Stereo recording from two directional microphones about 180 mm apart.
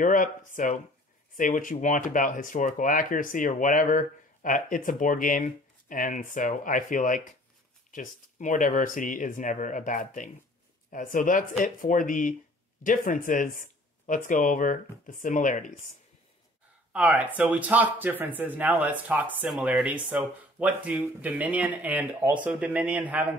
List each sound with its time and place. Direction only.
0.0 s speech: 45° left (ahead or behind)
16.9 s speech: 10° right (ahead or behind)